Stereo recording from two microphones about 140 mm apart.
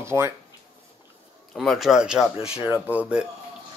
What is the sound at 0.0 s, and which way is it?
Speech, 20° right (ahead or behind).